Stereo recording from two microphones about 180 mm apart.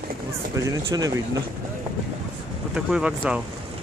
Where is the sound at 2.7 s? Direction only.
5° right (ahead or behind).